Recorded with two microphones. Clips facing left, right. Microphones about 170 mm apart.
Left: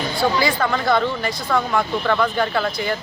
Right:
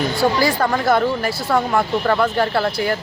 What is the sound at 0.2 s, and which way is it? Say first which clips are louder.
Speech: right 1 dB; 35° right (ahead or behind).